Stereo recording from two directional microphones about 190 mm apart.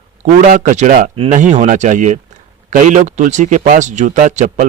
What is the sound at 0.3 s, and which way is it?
A man's voice, 45° right (ahead or behind).